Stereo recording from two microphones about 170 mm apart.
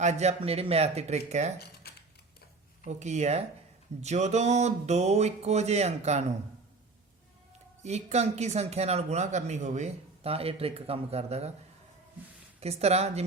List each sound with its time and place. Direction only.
0.0 s speech: 40° right (ahead or behind)
2.8 s speech: 40° right (ahead or behind)
7.8 s speech: 40° right (ahead or behind)
12.5 s speech: 40° right (ahead or behind)